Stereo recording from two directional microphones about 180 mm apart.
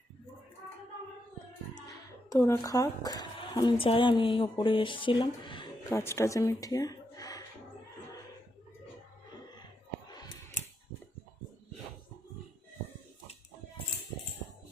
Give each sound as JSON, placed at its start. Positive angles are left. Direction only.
{"t": 1.9, "sound": "speech", "side_deg": 15}
{"t": 5.9, "sound": "speech", "side_deg": 15}